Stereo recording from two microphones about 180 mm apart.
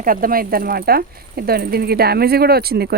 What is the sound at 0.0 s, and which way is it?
Speech, 50° right (ahead or behind).